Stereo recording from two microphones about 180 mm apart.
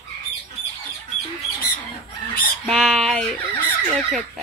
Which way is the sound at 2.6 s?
Centre (ahead or behind).